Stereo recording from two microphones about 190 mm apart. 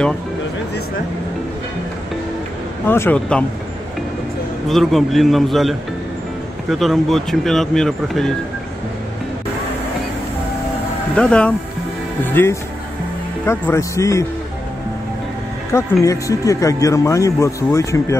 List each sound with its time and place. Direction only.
2.9 s speech: 10° left (ahead or behind)
4.6 s speech: centre (ahead or behind)
11.1 s speech: 5° left (ahead or behind)
13.5 s speech: 15° left (ahead or behind)
15.7 s speech: 15° left (ahead or behind)